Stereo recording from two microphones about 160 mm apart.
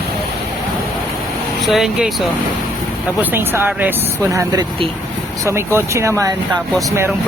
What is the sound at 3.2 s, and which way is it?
Speech, 15° right (ahead or behind).